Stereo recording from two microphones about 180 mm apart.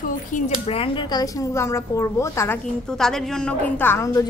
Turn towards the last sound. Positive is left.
turn(degrees=15)  # may be behind; listen again after turning